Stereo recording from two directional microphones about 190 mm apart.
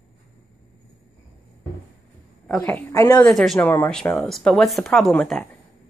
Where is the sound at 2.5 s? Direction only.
10° left (ahead or behind).